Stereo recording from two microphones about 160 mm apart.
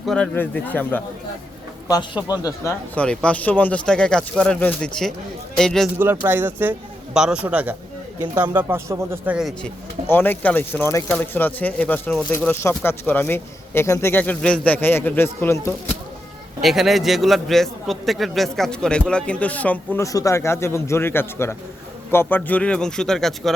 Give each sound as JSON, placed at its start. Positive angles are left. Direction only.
{"t": 0.0, "sound": "speech", "side_deg": 5}
{"t": 2.2, "sound": "speech", "side_deg": 25}
{"t": 2.9, "sound": "a man's voice", "side_deg": 5}
{"t": 6.0, "sound": "a man's voice", "side_deg": -15}
{"t": 10.1, "sound": "speech", "side_deg": 15}
{"t": 16.6, "sound": "speech", "side_deg": 0}